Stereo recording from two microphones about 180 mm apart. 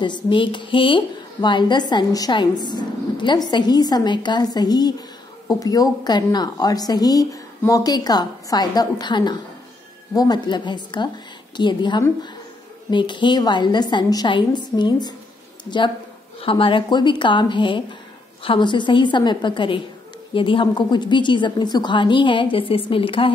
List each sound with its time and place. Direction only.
0.0 s a woman's voice: 25° left (ahead or behind)
16.3 s a woman's voice: 30° left (ahead or behind)